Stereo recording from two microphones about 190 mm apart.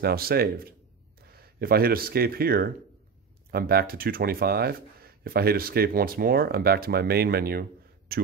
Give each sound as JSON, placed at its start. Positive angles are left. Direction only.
{"t": 0.0, "sound": "speech", "side_deg": -55}